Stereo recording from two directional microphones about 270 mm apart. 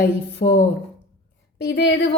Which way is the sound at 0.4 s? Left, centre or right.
Left.